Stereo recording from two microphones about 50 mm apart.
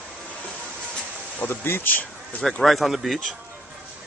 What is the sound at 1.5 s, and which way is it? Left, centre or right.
Speech, left.